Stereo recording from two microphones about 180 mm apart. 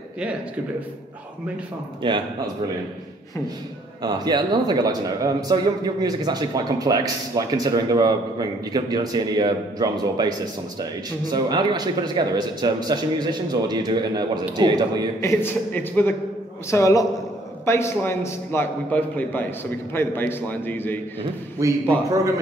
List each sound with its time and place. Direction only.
0.2 s a man's voice: 5° right (ahead or behind)
2.0 s a man's voice: 25° right (ahead or behind)
4.0 s a man's voice: 25° right (ahead or behind)
15.1 s a man's voice: 15° left (ahead or behind)
21.6 s a man's voice: 15° right (ahead or behind)